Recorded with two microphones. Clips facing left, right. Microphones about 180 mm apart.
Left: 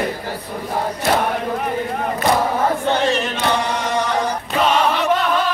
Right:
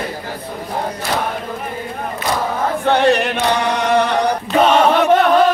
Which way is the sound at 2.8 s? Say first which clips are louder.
Right 4 dB; 60° right (ahead or behind).